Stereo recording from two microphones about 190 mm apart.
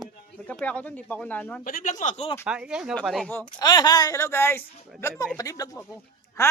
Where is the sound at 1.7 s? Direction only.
45° left (ahead or behind).